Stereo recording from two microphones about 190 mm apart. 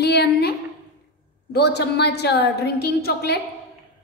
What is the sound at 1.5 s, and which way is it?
A woman's voice, 60° left (ahead or behind).